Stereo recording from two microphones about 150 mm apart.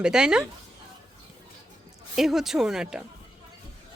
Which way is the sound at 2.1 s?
Centre (ahead or behind).